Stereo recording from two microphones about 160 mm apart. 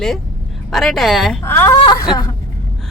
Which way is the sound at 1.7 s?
30° left (ahead or behind).